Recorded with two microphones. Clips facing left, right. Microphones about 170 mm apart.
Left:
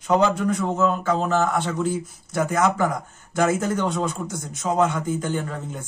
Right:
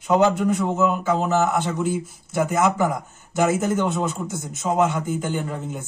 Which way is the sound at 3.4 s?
20° right (ahead or behind).